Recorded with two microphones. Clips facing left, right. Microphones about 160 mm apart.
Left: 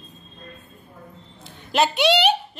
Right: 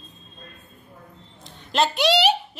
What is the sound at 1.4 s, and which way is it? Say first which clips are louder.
Speech: left 1 dB; 5° left (ahead or behind).